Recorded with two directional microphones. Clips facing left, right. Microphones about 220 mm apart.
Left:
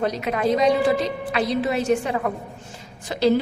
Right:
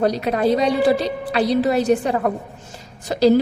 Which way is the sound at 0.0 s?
35° right (ahead or behind).